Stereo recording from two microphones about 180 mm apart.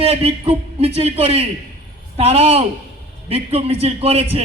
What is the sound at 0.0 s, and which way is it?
A man's voice, 35° right (ahead or behind).